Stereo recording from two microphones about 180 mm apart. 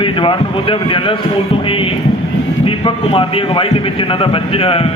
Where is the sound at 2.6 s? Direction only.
30° left (ahead or behind).